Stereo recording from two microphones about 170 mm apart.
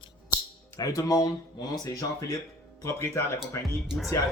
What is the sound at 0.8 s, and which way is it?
Speech, 20° left (ahead or behind).